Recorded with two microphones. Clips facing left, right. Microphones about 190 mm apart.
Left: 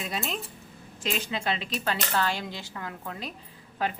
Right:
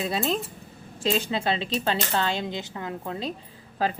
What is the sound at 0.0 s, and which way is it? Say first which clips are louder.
Speech: right 7 dB; 35° right (ahead or behind).